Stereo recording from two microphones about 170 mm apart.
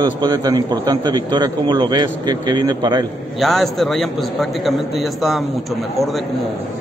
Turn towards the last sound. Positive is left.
turn(degrees=0)  # may be behind; listen again after turning